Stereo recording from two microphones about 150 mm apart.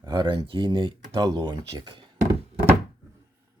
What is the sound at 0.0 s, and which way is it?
Speech, 30° right (ahead or behind).